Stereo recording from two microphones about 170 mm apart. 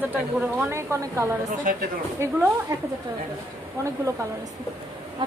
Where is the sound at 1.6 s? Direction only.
55° right (ahead or behind).